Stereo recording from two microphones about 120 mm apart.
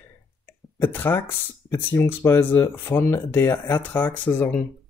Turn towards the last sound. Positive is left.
turn(degrees=20)  # may be behind; listen again after turning